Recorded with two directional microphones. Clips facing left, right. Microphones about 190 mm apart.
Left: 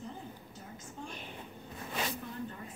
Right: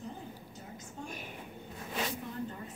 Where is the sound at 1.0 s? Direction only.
10° right (ahead or behind).